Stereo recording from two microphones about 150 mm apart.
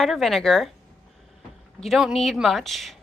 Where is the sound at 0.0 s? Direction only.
Centre (ahead or behind).